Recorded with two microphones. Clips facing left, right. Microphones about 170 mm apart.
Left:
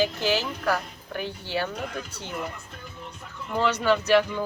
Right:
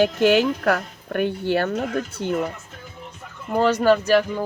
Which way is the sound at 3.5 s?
50° right (ahead or behind).